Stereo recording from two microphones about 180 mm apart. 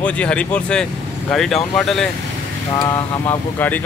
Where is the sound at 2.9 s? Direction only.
10° left (ahead or behind).